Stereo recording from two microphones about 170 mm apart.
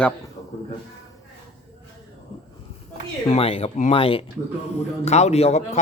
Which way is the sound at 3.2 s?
35° left (ahead or behind).